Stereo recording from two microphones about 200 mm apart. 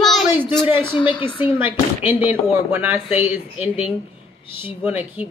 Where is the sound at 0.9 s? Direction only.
25° left (ahead or behind).